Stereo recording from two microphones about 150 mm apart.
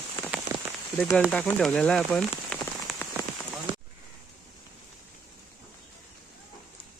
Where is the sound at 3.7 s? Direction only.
35° right (ahead or behind).